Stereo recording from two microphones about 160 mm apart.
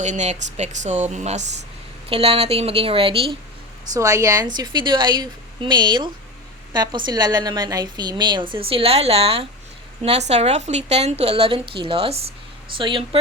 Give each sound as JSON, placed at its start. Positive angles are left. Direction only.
{"t": 0.0, "sound": "a woman's voice", "side_deg": -45}
{"t": 3.9, "sound": "a woman's voice", "side_deg": -20}